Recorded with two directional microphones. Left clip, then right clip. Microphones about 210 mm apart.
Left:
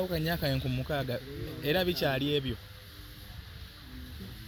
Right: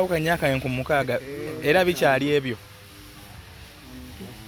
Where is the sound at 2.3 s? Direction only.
45° right (ahead or behind).